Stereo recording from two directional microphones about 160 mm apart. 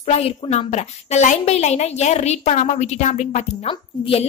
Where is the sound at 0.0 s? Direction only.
40° left (ahead or behind).